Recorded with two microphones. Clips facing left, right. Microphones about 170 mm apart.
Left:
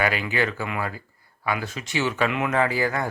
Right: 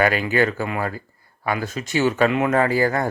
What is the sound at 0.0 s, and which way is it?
Speech, 45° right (ahead or behind).